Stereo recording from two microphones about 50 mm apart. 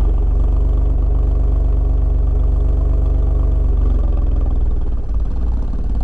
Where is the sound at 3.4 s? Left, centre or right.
Right.